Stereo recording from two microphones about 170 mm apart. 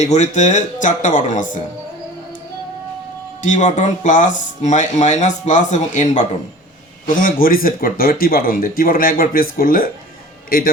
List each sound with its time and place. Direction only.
0.0 s speech: 45° left (ahead or behind)
3.4 s speech: 45° left (ahead or behind)